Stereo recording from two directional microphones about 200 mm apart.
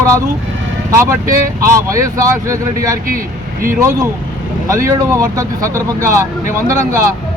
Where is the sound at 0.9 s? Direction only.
15° right (ahead or behind).